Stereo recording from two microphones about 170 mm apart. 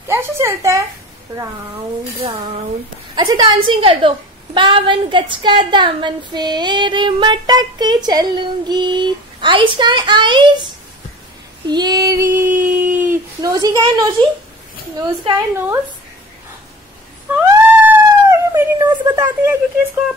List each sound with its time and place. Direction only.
0.1 s speech: 15° right (ahead or behind)
3.2 s a woman's voice: 25° right (ahead or behind)
11.6 s female singing: 25° right (ahead or behind)
12.6 s a sound: 10° right (ahead or behind)
15.0 s a woman's voice: 20° right (ahead or behind)
17.8 s a sound: 15° right (ahead or behind)